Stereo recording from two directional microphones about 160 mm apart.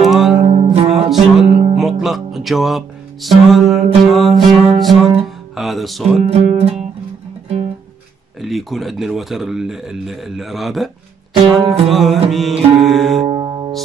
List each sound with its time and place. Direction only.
0.0 s music: centre (ahead or behind)
0.5 s music: 35° right (ahead or behind)
1.1 s music: 5° right (ahead or behind)
6.2 s music: 40° right (ahead or behind)
8.4 s speech: centre (ahead or behind)
11.6 s music: 35° right (ahead or behind)
11.9 s speech: centre (ahead or behind)
13.2 s music: 30° right (ahead or behind)